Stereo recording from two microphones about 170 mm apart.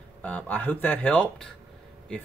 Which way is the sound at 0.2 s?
10° left (ahead or behind).